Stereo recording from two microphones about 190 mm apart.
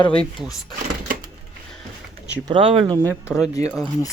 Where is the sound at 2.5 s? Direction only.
30° right (ahead or behind).